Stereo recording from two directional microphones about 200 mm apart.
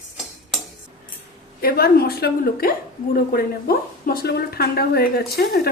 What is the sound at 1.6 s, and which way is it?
Speech, 50° left (ahead or behind).